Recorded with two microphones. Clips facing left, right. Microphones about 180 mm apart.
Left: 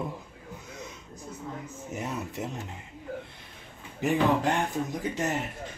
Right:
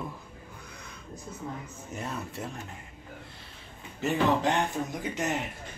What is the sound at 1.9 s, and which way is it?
Speech, 20° left (ahead or behind).